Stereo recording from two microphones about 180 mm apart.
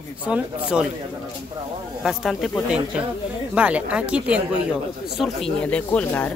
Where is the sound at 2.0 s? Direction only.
Centre (ahead or behind).